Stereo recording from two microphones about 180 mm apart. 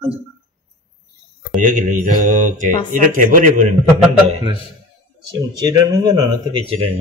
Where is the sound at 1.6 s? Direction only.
45° right (ahead or behind).